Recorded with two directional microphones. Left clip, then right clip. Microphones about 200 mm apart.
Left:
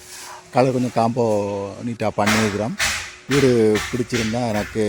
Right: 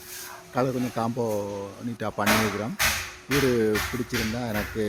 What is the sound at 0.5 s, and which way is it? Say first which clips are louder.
Speech: left 9 dB; 40° left (ahead or behind).